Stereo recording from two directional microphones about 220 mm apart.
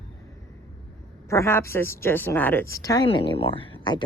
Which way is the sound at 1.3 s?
10° left (ahead or behind).